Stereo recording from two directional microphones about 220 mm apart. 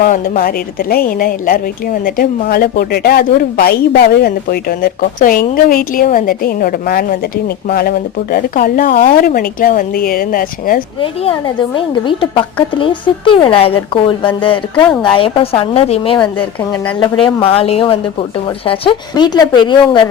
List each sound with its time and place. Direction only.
0.0 s a woman's voice: 40° left (ahead or behind)
11.0 s a woman's voice: 25° left (ahead or behind)
16.6 s a woman's voice: 10° left (ahead or behind)
17.0 s a woman's voice: 25° left (ahead or behind)